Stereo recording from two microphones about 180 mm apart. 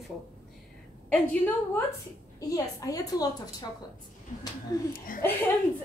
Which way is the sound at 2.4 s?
20° left (ahead or behind).